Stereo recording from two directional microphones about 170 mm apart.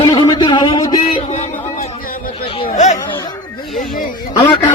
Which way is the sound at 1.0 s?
45° left (ahead or behind).